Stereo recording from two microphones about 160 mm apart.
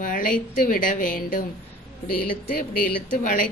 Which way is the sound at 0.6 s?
60° left (ahead or behind).